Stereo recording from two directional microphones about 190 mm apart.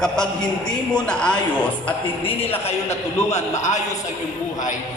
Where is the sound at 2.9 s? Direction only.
35° left (ahead or behind).